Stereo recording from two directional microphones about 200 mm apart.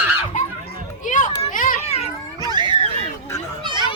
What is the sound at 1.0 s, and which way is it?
Children playing, 40° left (ahead or behind).